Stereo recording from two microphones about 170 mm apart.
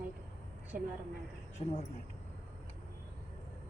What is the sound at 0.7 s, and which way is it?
Speech, 55° right (ahead or behind).